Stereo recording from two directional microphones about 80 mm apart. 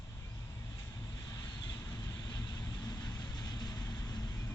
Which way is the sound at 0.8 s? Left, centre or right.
Left.